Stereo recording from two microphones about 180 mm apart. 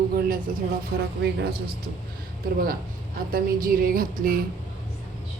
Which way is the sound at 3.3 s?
50° right (ahead or behind).